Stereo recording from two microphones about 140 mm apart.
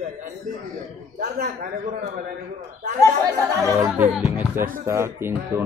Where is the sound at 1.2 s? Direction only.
60° right (ahead or behind); by 2.1 s 80° right.